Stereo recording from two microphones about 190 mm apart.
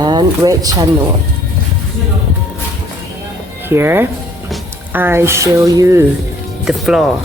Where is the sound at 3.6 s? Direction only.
10° right (ahead or behind).